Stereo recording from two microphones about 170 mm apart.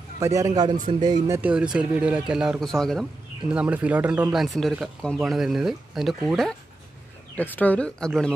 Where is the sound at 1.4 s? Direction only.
5° right (ahead or behind).